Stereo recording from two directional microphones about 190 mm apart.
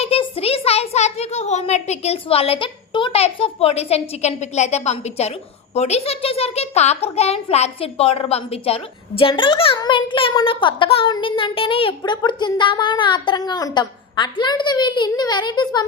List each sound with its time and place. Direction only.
0.0 s a woman's voice: 30° left (ahead or behind)